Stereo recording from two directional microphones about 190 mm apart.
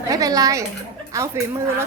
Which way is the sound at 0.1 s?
20° right (ahead or behind).